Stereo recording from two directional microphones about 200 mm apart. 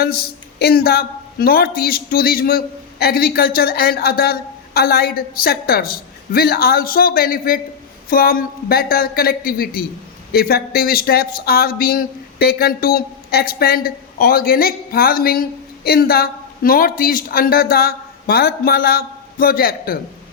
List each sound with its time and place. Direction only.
0.0 s speech: 50° left (ahead or behind)